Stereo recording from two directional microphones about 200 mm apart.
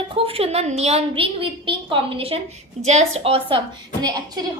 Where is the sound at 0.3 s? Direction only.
30° right (ahead or behind).